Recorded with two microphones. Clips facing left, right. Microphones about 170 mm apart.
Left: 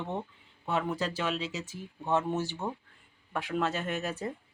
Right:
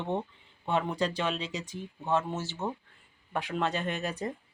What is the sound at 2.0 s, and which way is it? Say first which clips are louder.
Speech: left 1 dB; 15° left (ahead or behind).